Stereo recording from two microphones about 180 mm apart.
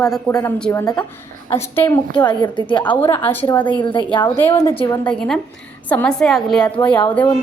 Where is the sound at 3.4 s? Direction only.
25° left (ahead or behind).